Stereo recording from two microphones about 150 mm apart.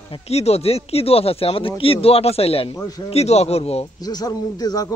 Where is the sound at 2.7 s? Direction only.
25° left (ahead or behind).